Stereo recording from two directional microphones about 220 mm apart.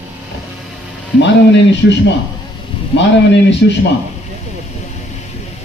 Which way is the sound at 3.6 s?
55° left (ahead or behind).